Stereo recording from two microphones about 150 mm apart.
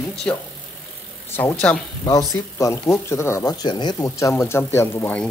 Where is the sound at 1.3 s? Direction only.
15° left (ahead or behind).